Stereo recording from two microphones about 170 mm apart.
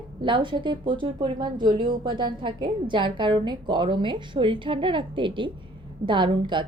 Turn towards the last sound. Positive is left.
turn(degrees=-25)  # may be behind; listen again after turning